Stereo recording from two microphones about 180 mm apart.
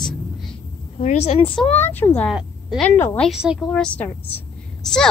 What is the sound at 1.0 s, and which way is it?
Speech, 35° left (ahead or behind).